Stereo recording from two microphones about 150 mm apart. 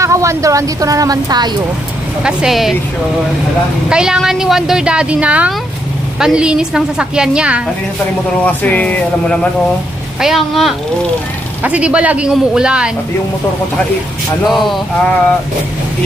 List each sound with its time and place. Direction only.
0.0 s speech: 20° right (ahead or behind)
2.2 s a woman's voice: 5° right (ahead or behind)
3.8 s a woman's voice: 5° right (ahead or behind)
8.4 s a woman's voice: 10° left (ahead or behind); by 12.9 s 5° right (ahead or behind)
14.4 s a woman's voice: centre (ahead or behind)